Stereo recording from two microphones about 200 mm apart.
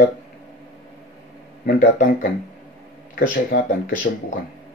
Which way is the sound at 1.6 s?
45° left (ahead or behind).